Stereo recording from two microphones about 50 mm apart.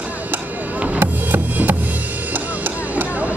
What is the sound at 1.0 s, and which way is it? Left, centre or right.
Music, right.